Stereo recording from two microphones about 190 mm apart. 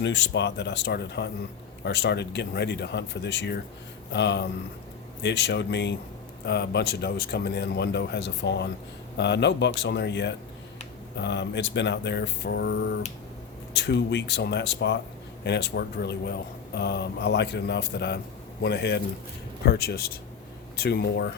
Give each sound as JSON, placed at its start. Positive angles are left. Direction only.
{"t": 0.0, "sound": "speech", "side_deg": 65}